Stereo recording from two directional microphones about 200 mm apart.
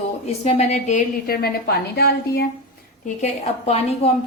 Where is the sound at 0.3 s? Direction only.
30° left (ahead or behind); by 2.5 s 50° left (ahead or behind).